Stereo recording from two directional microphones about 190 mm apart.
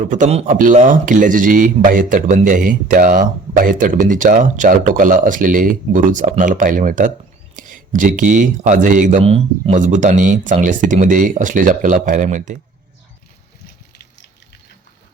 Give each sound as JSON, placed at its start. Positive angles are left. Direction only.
{"t": 0.0, "sound": "speech", "side_deg": -40}